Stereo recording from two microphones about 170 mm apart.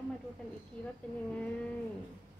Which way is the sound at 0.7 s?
5° left (ahead or behind).